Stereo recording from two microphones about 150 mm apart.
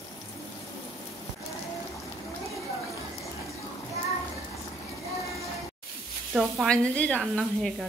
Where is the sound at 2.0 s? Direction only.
Centre (ahead or behind).